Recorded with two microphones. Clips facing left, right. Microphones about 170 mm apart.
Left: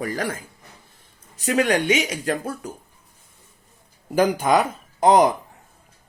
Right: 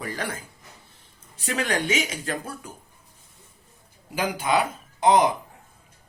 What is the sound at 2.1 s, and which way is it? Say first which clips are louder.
Speech: left 6 dB; 40° left (ahead or behind).